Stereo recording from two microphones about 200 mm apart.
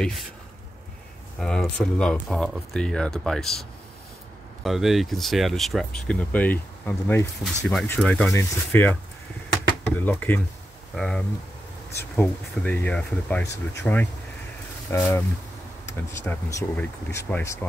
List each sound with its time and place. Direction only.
1.4 s speech: 5° left (ahead or behind)
4.6 s speech: centre (ahead or behind)
9.9 s speech: 10° left (ahead or behind)